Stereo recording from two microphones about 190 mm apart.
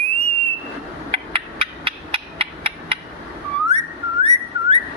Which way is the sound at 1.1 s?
30° right (ahead or behind).